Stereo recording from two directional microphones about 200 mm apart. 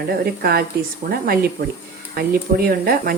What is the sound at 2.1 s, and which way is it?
Speech, 50° right (ahead or behind).